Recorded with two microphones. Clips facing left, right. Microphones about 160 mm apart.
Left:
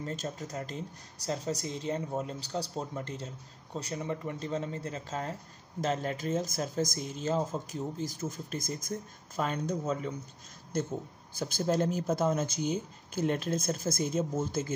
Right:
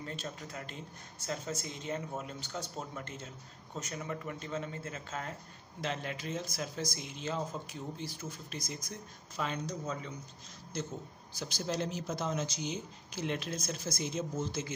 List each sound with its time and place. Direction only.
0.0 s speech: 40° left (ahead or behind)